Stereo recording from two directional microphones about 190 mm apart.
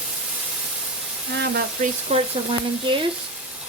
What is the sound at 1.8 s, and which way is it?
Frying, 35° right (ahead or behind).